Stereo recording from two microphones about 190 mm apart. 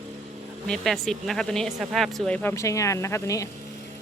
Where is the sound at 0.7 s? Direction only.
Centre (ahead or behind).